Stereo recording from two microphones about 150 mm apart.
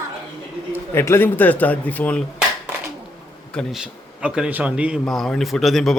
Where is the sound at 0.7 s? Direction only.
15° left (ahead or behind).